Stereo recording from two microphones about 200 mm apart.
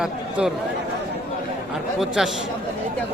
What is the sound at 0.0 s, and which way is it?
Speech, 5° right (ahead or behind).